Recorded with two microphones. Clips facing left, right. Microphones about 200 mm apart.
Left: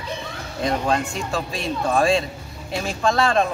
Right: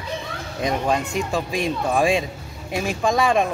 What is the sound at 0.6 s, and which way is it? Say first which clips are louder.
Speech: even; 15° right (ahead or behind).